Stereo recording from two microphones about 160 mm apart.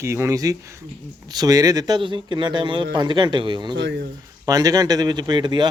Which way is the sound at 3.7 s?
90° right.